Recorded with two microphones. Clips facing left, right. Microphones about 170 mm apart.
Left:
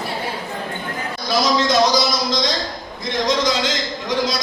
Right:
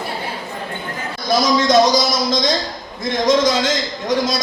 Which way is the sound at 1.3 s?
50° right (ahead or behind).